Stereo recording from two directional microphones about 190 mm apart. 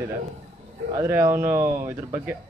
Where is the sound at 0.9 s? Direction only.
15° right (ahead or behind).